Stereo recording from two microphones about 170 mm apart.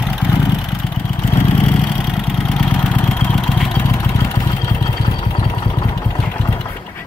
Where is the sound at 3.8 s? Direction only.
15° left (ahead or behind).